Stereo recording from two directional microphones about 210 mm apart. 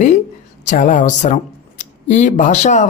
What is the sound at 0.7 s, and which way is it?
Speech, 40° left (ahead or behind).